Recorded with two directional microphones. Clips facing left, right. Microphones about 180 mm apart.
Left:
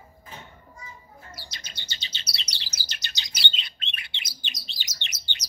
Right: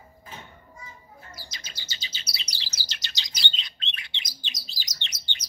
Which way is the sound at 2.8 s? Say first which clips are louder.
Right 1 dB; 50° left (ahead or behind).